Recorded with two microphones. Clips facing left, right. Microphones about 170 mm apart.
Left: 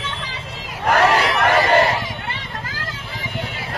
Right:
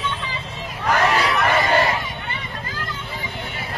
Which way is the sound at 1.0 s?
85° left.